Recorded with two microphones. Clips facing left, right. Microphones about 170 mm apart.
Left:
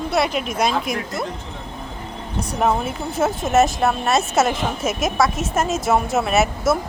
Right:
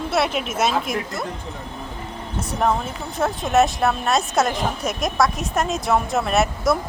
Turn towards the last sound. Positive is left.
turn(degrees=5)  # may be behind; listen again after turning